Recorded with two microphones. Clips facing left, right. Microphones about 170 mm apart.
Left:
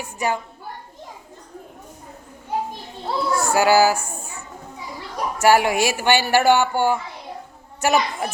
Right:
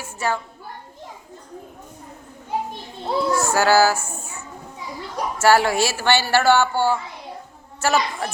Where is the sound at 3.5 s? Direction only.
15° left (ahead or behind).